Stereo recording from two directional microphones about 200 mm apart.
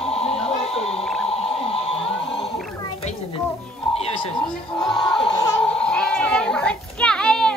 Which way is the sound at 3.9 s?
30° left (ahead or behind).